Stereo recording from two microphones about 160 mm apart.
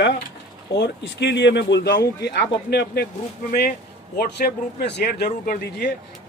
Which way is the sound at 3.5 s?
65° left (ahead or behind).